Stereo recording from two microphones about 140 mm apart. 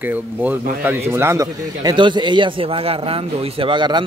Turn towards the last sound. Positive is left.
turn(degrees=-35)  # may be behind; listen again after turning